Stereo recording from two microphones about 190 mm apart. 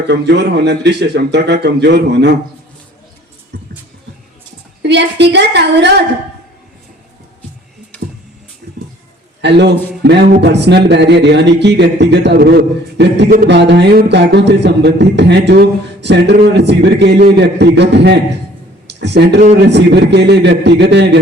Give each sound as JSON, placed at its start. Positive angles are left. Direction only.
{"t": 0.1, "sound": "speech", "side_deg": -60}
{"t": 3.5, "sound": "music", "side_deg": -65}
{"t": 4.8, "sound": "speech", "side_deg": -65}
{"t": 8.6, "sound": "music", "side_deg": -55}
{"t": 9.4, "sound": "speech", "side_deg": -65}